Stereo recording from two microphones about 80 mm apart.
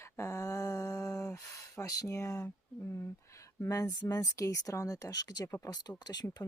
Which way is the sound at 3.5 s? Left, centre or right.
Left.